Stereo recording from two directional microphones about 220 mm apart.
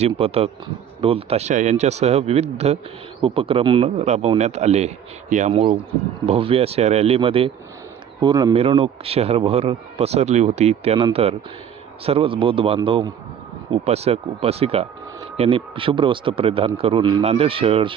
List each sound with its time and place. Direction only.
0.0 s speech: 25° right (ahead or behind)